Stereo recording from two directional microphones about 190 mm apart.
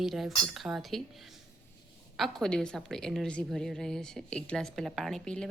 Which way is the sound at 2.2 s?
5° left (ahead or behind).